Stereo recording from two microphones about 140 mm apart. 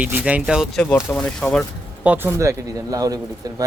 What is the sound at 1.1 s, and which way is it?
Speech, 5° left (ahead or behind).